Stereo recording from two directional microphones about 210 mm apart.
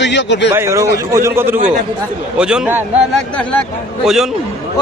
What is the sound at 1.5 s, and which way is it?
Speech, 40° right (ahead or behind).